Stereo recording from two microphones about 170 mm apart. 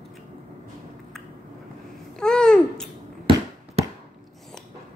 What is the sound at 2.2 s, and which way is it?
Babbling, 5° left (ahead or behind).